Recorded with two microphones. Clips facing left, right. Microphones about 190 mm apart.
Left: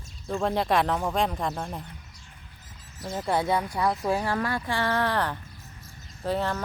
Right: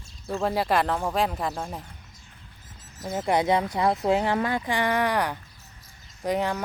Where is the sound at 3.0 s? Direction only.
20° right (ahead or behind).